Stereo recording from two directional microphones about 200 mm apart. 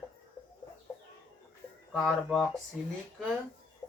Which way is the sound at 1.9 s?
Centre (ahead or behind).